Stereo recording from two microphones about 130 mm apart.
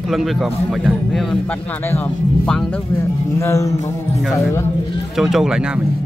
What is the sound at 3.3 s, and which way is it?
Speech, 25° left (ahead or behind).